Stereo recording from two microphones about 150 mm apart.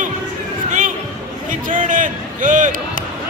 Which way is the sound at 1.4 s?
60° right (ahead or behind).